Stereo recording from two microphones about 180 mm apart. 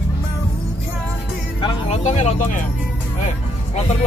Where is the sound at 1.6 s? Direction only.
35° left (ahead or behind).